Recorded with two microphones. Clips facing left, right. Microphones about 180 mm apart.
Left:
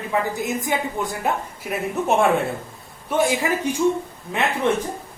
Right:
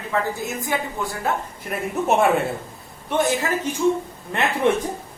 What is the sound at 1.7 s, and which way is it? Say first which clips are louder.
Speech: even; centre (ahead or behind).